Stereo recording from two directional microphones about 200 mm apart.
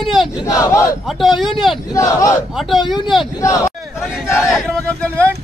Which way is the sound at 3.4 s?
15° left (ahead or behind).